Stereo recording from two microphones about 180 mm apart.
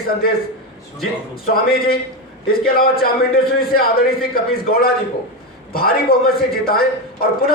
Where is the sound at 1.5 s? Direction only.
55° left (ahead or behind).